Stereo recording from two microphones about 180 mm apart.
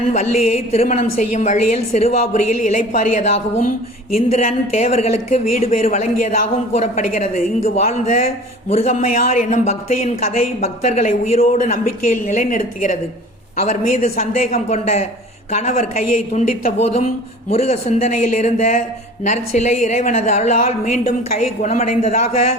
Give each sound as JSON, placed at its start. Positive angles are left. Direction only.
{"t": 0.1, "sound": "a woman's voice", "side_deg": 40}